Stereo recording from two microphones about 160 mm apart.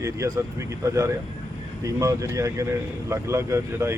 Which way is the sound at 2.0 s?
20° right (ahead or behind).